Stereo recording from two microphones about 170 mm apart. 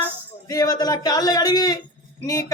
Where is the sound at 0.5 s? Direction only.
20° left (ahead or behind).